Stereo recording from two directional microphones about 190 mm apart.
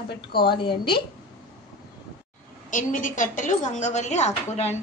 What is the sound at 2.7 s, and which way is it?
A woman's voice, 45° left (ahead or behind).